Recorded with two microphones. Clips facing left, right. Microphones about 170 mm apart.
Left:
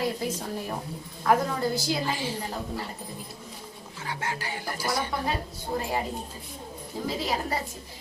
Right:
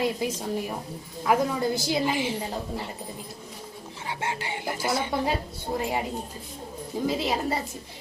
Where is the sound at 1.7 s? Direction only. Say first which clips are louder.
Right 3 dB; 20° right (ahead or behind).